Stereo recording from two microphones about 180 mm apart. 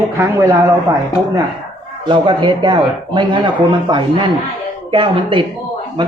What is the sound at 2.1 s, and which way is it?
Speech, 25° right (ahead or behind).